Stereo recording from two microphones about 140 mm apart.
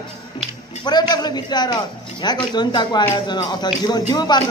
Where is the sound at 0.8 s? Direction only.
30° left (ahead or behind).